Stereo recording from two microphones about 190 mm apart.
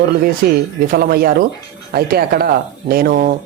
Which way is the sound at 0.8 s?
50° right (ahead or behind).